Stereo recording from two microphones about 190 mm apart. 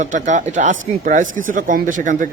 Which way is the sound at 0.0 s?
40° right (ahead or behind).